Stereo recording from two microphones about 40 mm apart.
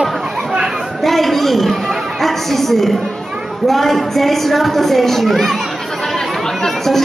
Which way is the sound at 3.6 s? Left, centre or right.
Centre.